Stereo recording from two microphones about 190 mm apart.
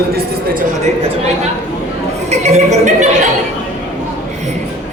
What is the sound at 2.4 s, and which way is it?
Speech, 35° right (ahead or behind).